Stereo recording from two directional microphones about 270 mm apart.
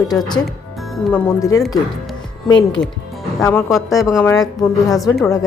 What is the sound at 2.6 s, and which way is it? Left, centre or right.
Speech, left.